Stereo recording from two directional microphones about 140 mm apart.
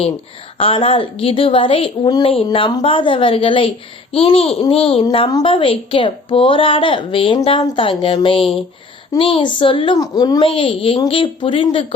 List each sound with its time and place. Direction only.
0.6 s a woman's voice: 40° left (ahead or behind)
4.1 s a sound: 45° left (ahead or behind)
5.3 s a woman's voice: 35° left (ahead or behind)
10.5 s a woman's voice: 40° left (ahead or behind)